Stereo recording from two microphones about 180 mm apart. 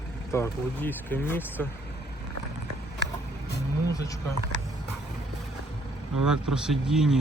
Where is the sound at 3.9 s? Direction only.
20° left (ahead or behind).